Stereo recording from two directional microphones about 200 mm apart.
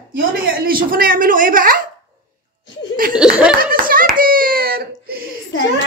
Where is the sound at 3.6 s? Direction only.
45° right (ahead or behind).